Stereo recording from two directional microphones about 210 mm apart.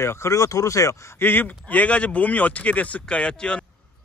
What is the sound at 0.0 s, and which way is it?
Speech, 15° left (ahead or behind).